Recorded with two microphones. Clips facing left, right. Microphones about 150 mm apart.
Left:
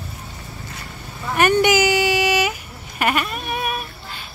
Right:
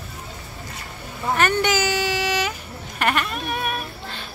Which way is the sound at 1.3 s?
15° left (ahead or behind).